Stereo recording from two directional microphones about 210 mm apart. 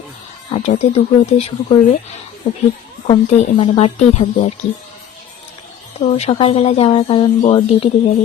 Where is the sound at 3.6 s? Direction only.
30° left (ahead or behind).